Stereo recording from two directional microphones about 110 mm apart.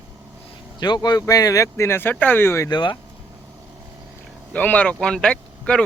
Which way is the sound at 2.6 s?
40° left (ahead or behind).